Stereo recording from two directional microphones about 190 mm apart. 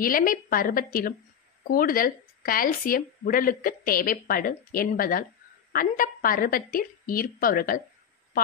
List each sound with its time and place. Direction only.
0.0 s speech: 50° left (ahead or behind)